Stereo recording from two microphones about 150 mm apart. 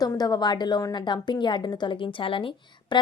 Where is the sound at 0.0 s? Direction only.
25° left (ahead or behind).